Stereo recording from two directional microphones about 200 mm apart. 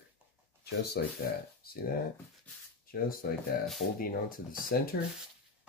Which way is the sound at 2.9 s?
50° left (ahead or behind).